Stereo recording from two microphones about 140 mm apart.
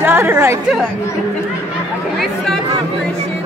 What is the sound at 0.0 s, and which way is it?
Speech, 15° right (ahead or behind).